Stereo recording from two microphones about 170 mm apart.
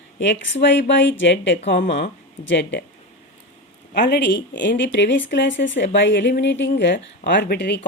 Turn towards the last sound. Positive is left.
turn(degrees=80)